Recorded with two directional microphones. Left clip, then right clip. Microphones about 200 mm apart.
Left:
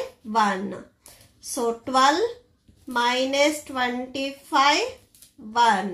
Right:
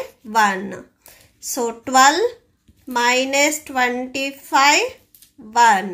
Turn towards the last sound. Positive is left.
turn(degrees=-40)  # may be behind; listen again after turning